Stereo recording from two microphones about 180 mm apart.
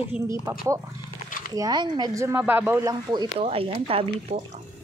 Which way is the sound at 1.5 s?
20° right (ahead or behind).